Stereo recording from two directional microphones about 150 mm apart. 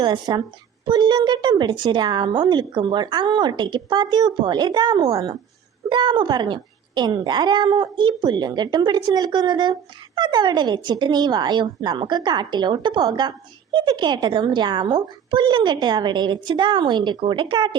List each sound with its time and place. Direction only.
0.0 s speech: 30° right (ahead or behind)